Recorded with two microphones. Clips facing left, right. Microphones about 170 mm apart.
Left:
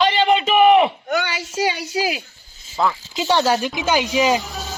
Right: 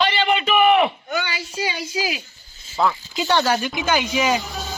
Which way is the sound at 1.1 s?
75° left (ahead or behind).